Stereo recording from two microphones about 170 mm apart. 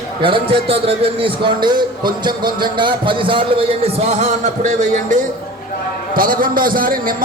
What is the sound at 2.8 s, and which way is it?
A man's voice, 30° right (ahead or behind).